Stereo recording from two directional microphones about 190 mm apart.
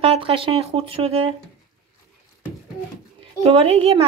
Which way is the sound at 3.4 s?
30° right (ahead or behind).